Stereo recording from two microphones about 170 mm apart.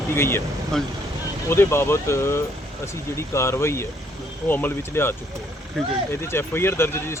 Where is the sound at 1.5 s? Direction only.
15° left (ahead or behind).